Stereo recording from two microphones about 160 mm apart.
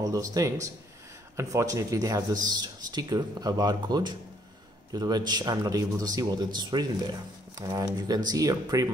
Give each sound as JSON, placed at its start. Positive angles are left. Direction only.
{"t": 0.0, "sound": "speech", "side_deg": -20}